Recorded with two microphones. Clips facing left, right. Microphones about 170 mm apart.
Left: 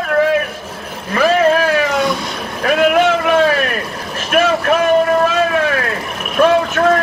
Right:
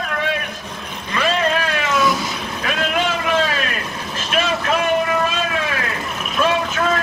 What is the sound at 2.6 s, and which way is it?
Vehicle, 60° left (ahead or behind).